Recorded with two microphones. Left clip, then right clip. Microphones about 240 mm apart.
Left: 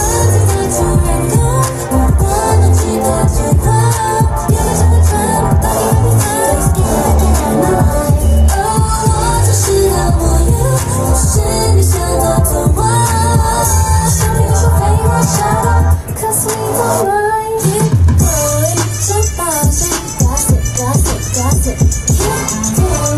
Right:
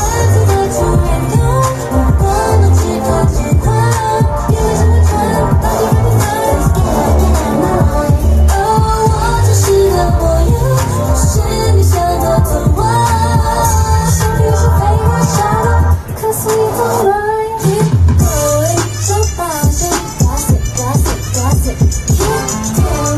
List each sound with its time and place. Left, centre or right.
2.2 s music: left
8.7 s music: left
12.8 s music: left